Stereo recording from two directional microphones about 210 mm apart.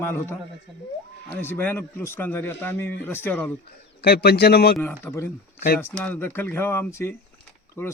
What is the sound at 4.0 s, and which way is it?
Speech, 50° left (ahead or behind).